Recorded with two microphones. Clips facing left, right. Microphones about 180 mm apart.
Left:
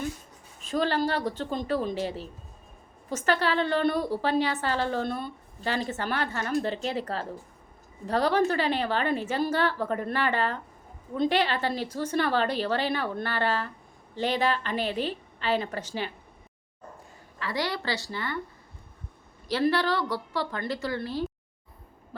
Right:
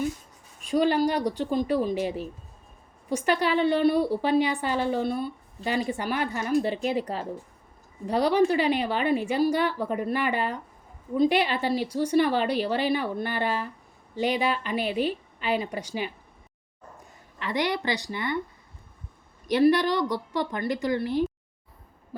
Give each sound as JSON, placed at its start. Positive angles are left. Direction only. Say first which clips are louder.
{"t": 0.6, "sound": "a woman's voice", "louder": "right 4 dB", "side_deg": -15}
{"t": 17.4, "sound": "a woman's voice", "louder": "right 3 dB", "side_deg": -20}
{"t": 19.5, "sound": "a woman's voice", "louder": "right 4 dB", "side_deg": -15}